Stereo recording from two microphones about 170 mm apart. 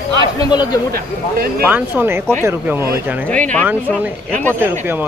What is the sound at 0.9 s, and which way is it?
Speech, 60° right (ahead or behind).